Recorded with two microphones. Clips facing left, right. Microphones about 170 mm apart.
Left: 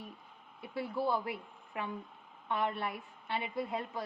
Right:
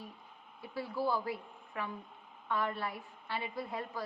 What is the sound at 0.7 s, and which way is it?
A woman's voice, 25° left (ahead or behind).